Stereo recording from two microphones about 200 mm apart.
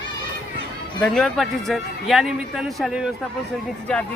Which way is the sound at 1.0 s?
Centre (ahead or behind).